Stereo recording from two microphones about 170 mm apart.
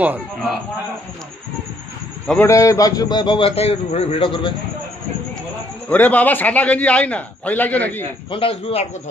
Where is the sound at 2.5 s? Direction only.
20° left (ahead or behind).